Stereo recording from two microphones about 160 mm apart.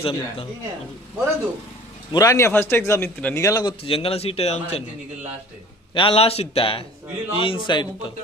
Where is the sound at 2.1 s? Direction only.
20° left (ahead or behind); by 4.8 s 40° left (ahead or behind).